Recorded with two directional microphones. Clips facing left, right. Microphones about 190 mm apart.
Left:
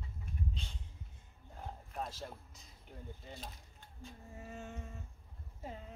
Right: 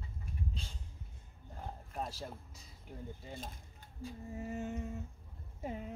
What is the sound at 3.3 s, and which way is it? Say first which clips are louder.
Speech: right 2 dB; 50° right (ahead or behind).